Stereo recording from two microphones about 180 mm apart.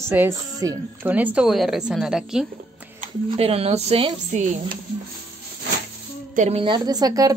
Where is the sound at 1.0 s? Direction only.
10° right (ahead or behind).